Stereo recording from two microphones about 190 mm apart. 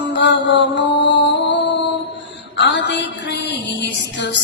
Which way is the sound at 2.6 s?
65° left (ahead or behind).